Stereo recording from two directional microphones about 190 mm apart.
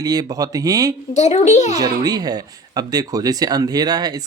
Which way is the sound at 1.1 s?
35° left (ahead or behind).